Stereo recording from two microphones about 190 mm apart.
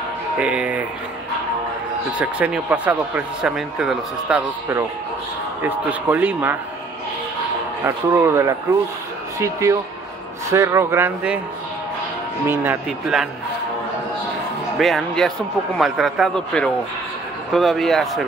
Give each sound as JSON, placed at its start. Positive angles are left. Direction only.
{"t": 0.4, "sound": "speech", "side_deg": -5}
{"t": 2.1, "sound": "speech", "side_deg": -5}
{"t": 5.6, "sound": "speech", "side_deg": -10}
{"t": 7.8, "sound": "speech", "side_deg": -15}
{"t": 12.4, "sound": "speech", "side_deg": -10}
{"t": 14.8, "sound": "speech", "side_deg": 0}